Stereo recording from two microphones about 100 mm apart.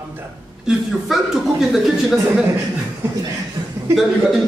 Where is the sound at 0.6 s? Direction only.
Centre (ahead or behind).